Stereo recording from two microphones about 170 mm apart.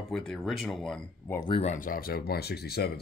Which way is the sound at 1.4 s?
30° left (ahead or behind).